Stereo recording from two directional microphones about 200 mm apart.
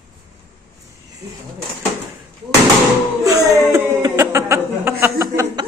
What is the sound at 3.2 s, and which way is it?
Speech, 15° right (ahead or behind).